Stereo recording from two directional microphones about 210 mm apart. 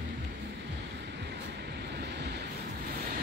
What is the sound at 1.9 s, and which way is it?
Vehicle, 55° right (ahead or behind).